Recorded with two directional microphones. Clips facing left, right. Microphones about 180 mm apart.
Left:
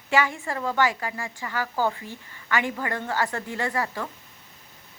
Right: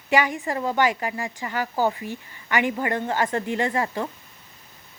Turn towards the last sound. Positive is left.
turn(degrees=-20)  # may be behind; listen again after turning